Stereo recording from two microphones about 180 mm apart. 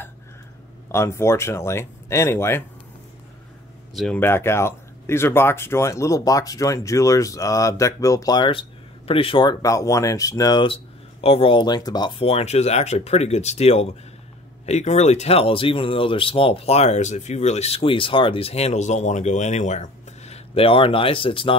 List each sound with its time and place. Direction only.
0.9 s speech: 15° left (ahead or behind)
3.9 s speech: centre (ahead or behind)
4.2 s speech: 15° left (ahead or behind); by 21.5 s 30° left (ahead or behind)